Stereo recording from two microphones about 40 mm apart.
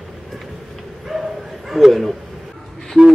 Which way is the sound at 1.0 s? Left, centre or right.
Centre.